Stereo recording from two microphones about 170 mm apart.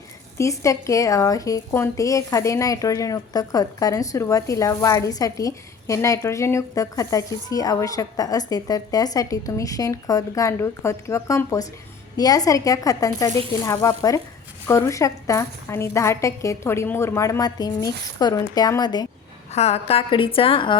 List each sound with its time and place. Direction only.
0.3 s a woman's voice: 20° left (ahead or behind)
19.5 s a woman's voice: 40° left (ahead or behind)